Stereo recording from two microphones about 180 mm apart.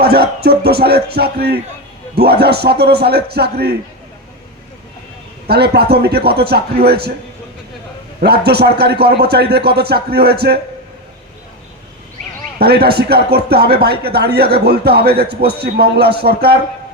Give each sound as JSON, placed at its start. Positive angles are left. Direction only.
{"t": 0.0, "sound": "speech", "side_deg": -60}
{"t": 5.5, "sound": "speech", "side_deg": -60}
{"t": 8.2, "sound": "speech", "side_deg": -65}
{"t": 12.5, "sound": "speech", "side_deg": -60}